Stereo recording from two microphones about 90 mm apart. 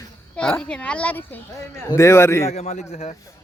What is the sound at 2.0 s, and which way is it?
Speech, 30° left (ahead or behind).